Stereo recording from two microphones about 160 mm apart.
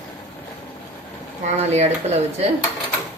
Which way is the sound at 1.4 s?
45° right (ahead or behind).